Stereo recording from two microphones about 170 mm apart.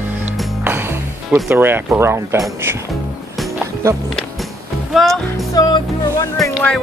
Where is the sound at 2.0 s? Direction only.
15° right (ahead or behind).